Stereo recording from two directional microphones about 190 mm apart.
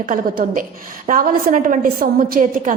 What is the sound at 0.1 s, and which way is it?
A woman's voice, 45° right (ahead or behind).